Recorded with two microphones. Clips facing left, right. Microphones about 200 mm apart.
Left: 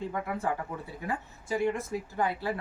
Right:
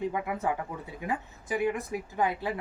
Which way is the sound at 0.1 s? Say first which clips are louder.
Right 1 dB; 15° right (ahead or behind).